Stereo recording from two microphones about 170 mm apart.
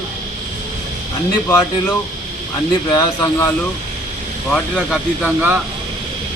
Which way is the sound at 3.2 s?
15° left (ahead or behind).